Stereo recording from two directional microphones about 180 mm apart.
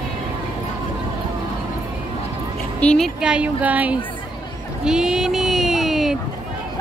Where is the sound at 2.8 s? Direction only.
5° left (ahead or behind).